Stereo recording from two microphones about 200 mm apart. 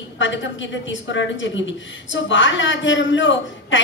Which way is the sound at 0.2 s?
65° left (ahead or behind).